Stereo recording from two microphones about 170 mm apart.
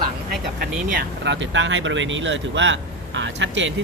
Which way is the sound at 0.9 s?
90° right.